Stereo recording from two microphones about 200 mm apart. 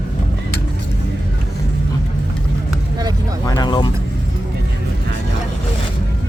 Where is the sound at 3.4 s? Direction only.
20° left (ahead or behind).